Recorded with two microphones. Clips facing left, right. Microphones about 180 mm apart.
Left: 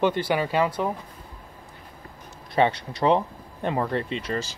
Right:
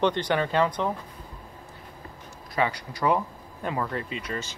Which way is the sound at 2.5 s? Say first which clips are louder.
Left 5 dB; 25° left (ahead or behind).